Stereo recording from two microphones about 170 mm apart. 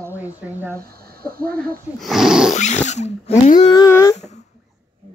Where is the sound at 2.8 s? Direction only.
40° left (ahead or behind).